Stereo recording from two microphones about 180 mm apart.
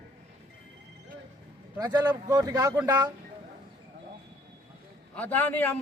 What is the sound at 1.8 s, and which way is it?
A man's voice, 20° right (ahead or behind).